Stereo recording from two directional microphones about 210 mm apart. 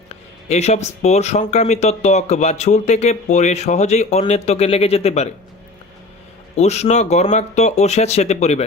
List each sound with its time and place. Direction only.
0.4 s speech: 30° left (ahead or behind)
6.6 s speech: 30° left (ahead or behind)